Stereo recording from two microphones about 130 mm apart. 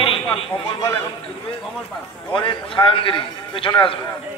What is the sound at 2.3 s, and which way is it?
A man's voice, 40° left (ahead or behind).